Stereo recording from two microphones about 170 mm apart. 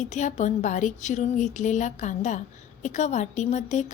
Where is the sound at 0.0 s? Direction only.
45° left (ahead or behind).